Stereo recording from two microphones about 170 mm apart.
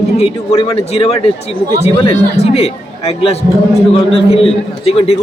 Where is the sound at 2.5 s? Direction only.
35° left (ahead or behind).